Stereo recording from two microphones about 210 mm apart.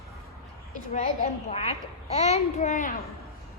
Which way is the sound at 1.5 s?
30° left (ahead or behind).